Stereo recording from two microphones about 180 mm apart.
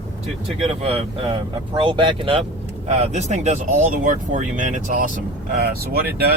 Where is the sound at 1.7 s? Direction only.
30° right (ahead or behind); by 5.2 s 45° right (ahead or behind).